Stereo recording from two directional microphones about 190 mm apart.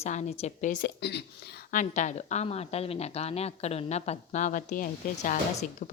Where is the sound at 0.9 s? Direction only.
60° left (ahead or behind).